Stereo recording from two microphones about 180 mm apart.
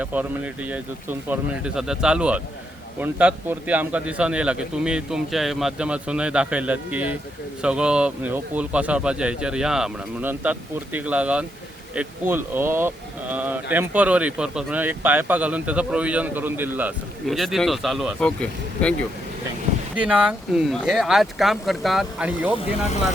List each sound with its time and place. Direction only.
0.0 s a man's voice: 10° right (ahead or behind)
17.2 s a man's voice: centre (ahead or behind)
20.0 s a man's voice: 5° right (ahead or behind)